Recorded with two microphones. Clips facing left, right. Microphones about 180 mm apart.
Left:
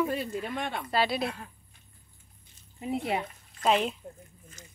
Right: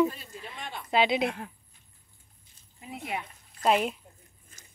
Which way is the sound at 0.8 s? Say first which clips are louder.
Right 4 dB; 20° right (ahead or behind).